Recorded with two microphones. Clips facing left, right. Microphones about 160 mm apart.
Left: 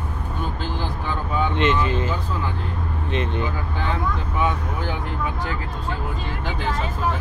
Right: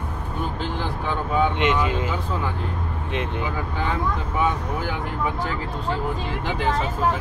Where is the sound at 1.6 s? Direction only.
15° right (ahead or behind).